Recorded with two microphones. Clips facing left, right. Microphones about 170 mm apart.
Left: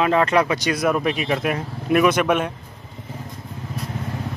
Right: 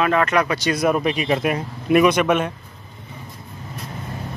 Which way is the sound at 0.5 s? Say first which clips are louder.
Right 1 dB; 15° left (ahead or behind).